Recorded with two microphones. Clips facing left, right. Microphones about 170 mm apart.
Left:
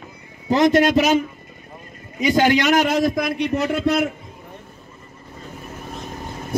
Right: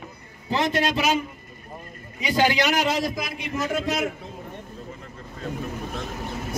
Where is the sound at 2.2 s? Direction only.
45° left (ahead or behind); by 4.0 s 65° left (ahead or behind).